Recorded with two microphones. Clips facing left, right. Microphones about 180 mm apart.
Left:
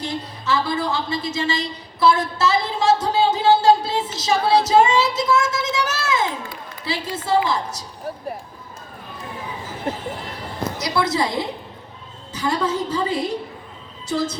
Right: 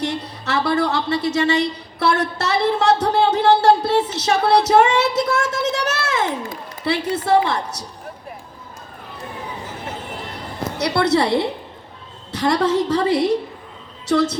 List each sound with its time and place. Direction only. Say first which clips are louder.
0.0 s a sound: right 3 dB; 70° right (ahead or behind)
6.8 s a woman's voice: right 6 dB; 65° right (ahead or behind)
10.8 s a woman's voice: right 5 dB; 65° right (ahead or behind)